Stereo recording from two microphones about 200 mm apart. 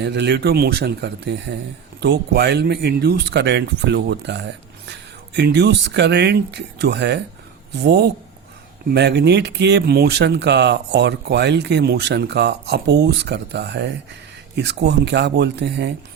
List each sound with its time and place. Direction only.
0.0 s speech: 60° right (ahead or behind)